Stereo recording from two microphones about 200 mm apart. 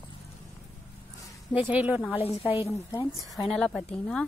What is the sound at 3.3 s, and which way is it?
Speech, centre (ahead or behind).